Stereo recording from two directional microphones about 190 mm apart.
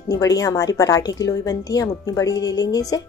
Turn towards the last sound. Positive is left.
turn(degrees=20)  # may be behind; listen again after turning